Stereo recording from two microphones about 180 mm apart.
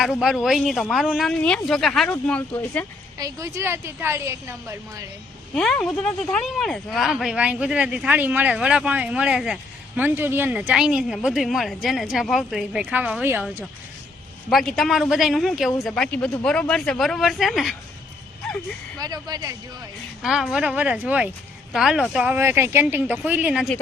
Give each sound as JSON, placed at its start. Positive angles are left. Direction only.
{"t": 0.0, "sound": "speech", "side_deg": -5}
{"t": 3.2, "sound": "speech", "side_deg": -15}
{"t": 5.5, "sound": "speech", "side_deg": 5}
{"t": 14.5, "sound": "speech", "side_deg": 0}
{"t": 18.9, "sound": "speech", "side_deg": -20}
{"t": 20.2, "sound": "speech", "side_deg": 0}